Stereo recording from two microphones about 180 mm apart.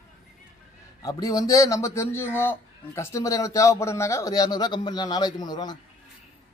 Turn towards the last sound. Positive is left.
turn(degrees=20)  # may be behind; listen again after turning